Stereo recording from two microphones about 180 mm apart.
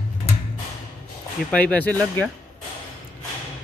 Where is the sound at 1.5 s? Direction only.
5° left (ahead or behind).